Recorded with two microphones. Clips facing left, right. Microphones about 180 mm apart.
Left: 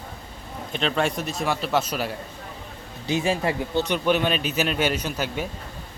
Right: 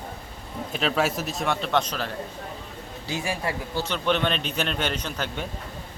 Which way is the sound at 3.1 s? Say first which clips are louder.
Left 6 dB; 20° left (ahead or behind).